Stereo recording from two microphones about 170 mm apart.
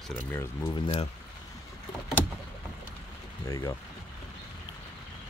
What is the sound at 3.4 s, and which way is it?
Speech, 20° left (ahead or behind).